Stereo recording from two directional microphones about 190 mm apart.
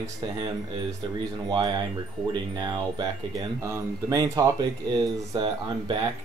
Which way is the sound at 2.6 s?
20° right (ahead or behind).